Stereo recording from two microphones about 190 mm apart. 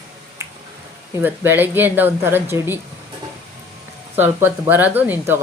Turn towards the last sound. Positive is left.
turn(degrees=-10)  # may be behind; listen again after turning